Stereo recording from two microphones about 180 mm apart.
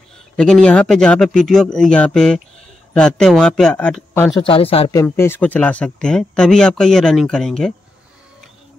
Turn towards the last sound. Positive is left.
turn(degrees=0)  # may be behind; listen again after turning